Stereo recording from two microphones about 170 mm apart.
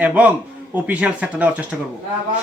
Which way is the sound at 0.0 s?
10° right (ahead or behind).